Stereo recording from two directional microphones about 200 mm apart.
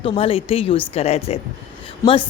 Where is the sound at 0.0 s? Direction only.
30° left (ahead or behind).